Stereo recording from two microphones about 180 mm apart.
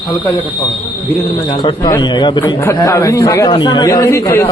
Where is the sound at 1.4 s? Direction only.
25° left (ahead or behind).